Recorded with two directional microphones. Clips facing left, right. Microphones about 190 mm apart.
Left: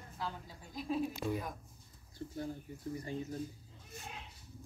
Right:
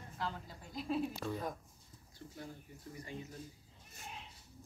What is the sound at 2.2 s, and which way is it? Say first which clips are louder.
Speech: left 8 dB; 30° left (ahead or behind).